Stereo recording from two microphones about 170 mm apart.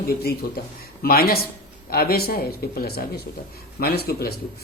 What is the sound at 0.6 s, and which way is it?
A man's voice, 65° left (ahead or behind).